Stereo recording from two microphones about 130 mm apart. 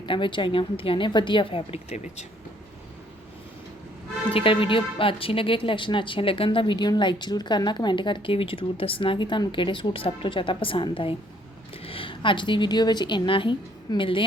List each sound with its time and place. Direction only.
0.0 s a woman's voice: 40° left (ahead or behind)
4.3 s a woman's voice: 45° left (ahead or behind)